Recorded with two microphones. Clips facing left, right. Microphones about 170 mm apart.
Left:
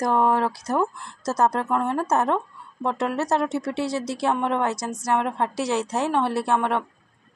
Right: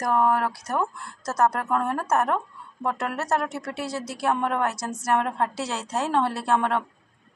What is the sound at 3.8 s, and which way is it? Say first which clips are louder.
Speech: left 3 dB; 80° left.